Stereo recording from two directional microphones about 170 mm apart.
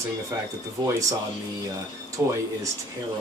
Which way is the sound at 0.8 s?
20° right (ahead or behind).